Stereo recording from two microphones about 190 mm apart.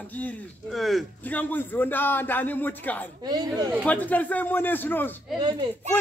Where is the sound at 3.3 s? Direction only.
20° right (ahead or behind).